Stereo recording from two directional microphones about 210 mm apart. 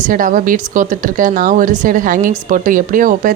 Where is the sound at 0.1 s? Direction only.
40° right (ahead or behind).